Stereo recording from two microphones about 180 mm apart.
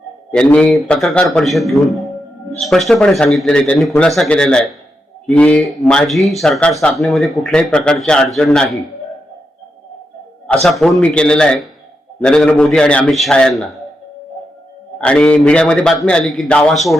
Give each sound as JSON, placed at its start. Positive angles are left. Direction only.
{"t": 0.3, "sound": "speech", "side_deg": 5}
{"t": 10.4, "sound": "speech", "side_deg": 5}
{"t": 15.0, "sound": "speech", "side_deg": 5}